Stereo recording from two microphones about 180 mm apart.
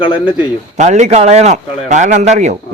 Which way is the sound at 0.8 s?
40° right (ahead or behind).